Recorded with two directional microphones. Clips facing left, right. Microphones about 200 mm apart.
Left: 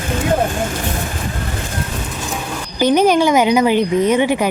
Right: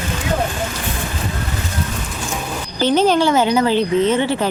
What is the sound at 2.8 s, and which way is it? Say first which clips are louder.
A woman's voice: left 2 dB; 15° left (ahead or behind).